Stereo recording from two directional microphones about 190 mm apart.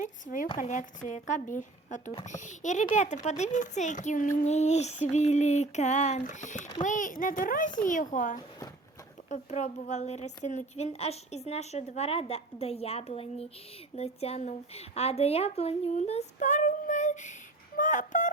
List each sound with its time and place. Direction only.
0.0 s a child's voice: 45° left (ahead or behind)